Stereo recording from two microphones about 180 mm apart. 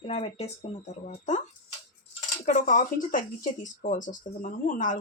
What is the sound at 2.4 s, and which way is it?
Speech, 45° left (ahead or behind).